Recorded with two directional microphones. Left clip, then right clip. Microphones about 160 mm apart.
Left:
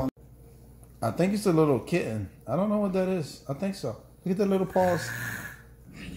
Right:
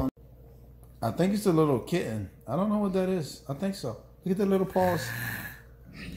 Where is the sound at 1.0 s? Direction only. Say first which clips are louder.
Left 1 dB; 25° left (ahead or behind).